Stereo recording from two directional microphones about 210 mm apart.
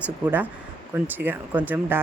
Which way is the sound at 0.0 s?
10° right (ahead or behind).